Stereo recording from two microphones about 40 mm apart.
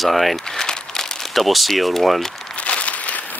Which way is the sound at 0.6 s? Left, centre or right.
Centre.